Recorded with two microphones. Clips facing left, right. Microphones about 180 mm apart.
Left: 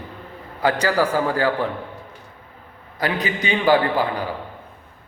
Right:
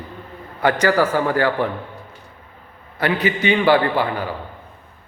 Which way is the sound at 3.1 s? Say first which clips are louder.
Right 4 dB; 40° left (ahead or behind).